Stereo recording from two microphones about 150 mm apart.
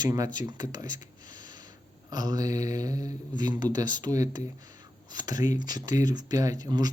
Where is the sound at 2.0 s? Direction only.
25° right (ahead or behind).